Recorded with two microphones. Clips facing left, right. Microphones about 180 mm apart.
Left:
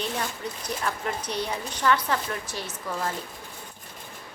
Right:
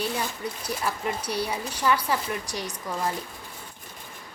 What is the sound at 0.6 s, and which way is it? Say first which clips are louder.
A woman's voice: right 1 dB; 10° right (ahead or behind).